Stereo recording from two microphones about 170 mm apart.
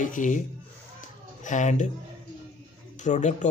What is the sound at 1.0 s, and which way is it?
Music, 45° left (ahead or behind).